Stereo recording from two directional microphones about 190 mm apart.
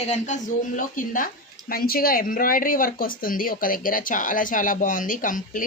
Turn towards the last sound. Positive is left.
turn(degrees=45)  # may be behind; listen again after turning